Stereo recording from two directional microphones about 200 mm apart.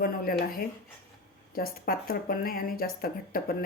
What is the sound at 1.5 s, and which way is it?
Speech, 45° left (ahead or behind).